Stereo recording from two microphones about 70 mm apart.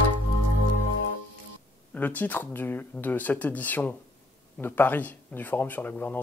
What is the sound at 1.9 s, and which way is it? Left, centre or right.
Speech, left.